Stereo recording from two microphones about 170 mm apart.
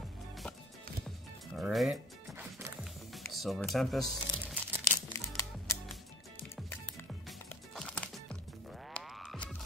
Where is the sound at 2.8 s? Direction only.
Centre (ahead or behind).